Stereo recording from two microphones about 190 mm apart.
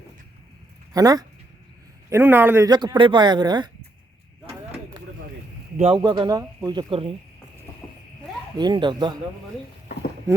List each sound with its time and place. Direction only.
0.9 s a man's voice: 20° right (ahead or behind)
2.6 s speech: 20° right (ahead or behind)
5.9 s speech: 20° right (ahead or behind)
8.5 s speech: 25° right (ahead or behind)